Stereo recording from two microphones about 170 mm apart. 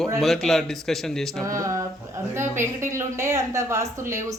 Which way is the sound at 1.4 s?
20° right (ahead or behind).